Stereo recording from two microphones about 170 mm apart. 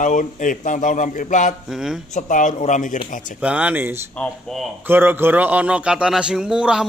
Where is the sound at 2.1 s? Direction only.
50° left (ahead or behind).